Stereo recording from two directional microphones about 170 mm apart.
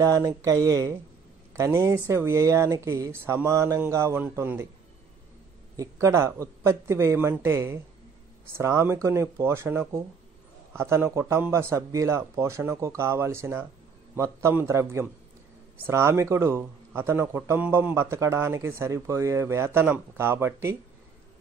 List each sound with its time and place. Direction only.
0.0 s a man's voice: 20° right (ahead or behind)
5.8 s a man's voice: 15° right (ahead or behind)